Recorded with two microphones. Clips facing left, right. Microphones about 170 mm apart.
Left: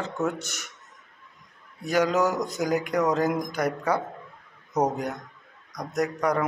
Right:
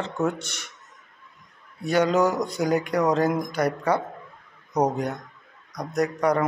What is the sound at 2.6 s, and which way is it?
Speech, centre (ahead or behind).